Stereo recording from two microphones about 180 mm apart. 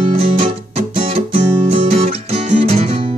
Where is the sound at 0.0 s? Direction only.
35° right (ahead or behind).